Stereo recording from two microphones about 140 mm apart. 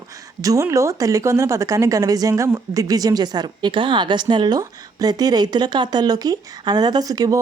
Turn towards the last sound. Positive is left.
turn(degrees=-25)  # may be behind; listen again after turning